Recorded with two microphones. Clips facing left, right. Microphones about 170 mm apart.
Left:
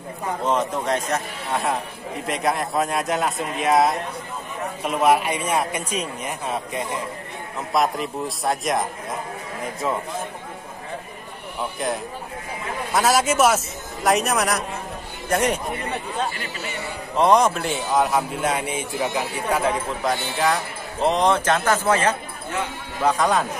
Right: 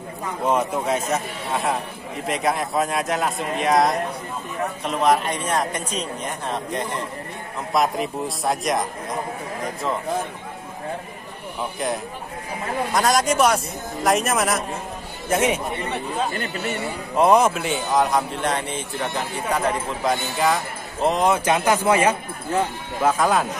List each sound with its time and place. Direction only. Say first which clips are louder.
0.5 s a man's voice: right 2 dB; 10° right (ahead or behind)
12.9 s a man's voice: left 1 dB; 5° left (ahead or behind)
16.3 s speech: right 5 dB; 55° right (ahead or behind)
17.2 s a man's voice: right 1 dB; 5° right (ahead or behind)
23.0 s a man's voice: right 1 dB; centre (ahead or behind)